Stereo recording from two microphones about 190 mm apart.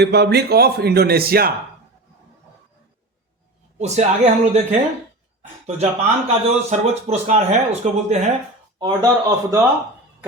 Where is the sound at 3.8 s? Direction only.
35° right (ahead or behind).